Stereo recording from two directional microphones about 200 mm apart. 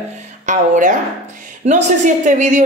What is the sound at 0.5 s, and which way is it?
A woman's voice, 40° right (ahead or behind).